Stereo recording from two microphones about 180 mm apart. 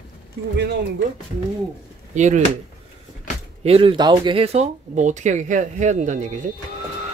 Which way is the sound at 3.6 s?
30° right (ahead or behind).